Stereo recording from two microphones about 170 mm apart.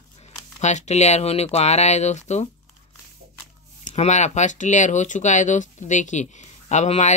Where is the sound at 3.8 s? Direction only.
40° left (ahead or behind).